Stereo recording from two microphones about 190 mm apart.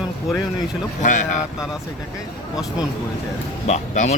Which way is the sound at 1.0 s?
40° left (ahead or behind).